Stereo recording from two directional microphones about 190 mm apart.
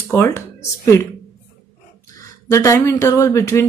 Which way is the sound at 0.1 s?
15° left (ahead or behind).